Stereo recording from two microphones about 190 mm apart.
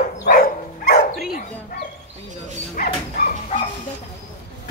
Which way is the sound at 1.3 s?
50° left (ahead or behind).